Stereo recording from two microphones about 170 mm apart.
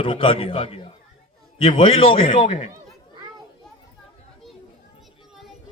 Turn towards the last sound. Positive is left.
turn(degrees=0)  # may be behind; listen again after turning